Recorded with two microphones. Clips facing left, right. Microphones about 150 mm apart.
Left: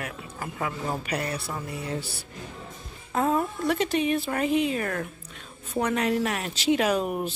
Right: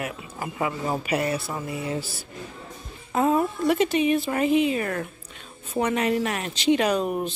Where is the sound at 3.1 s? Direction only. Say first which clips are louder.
Right 3 dB; 5° right (ahead or behind).